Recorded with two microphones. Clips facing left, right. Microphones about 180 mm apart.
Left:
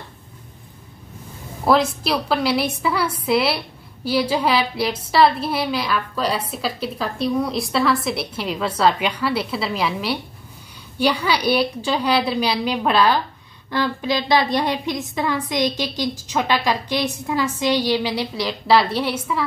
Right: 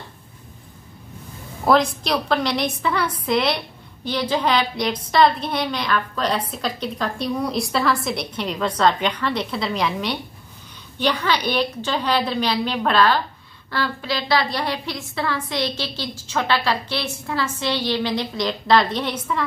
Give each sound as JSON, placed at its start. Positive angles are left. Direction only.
{"t": 1.7, "sound": "a woman's voice", "side_deg": 5}